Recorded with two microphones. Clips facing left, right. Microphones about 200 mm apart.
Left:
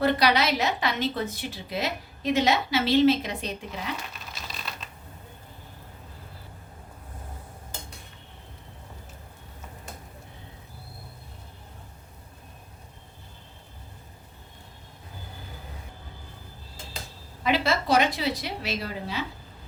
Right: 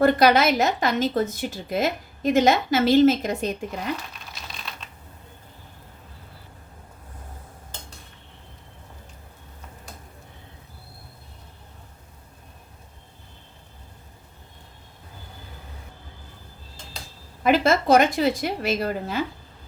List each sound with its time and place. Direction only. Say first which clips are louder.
0.0 s a woman's voice: right 6 dB; 50° right (ahead or behind)
4.4 s typing: even; centre (ahead or behind)
17.4 s a woman's voice: right 6 dB; 50° right (ahead or behind)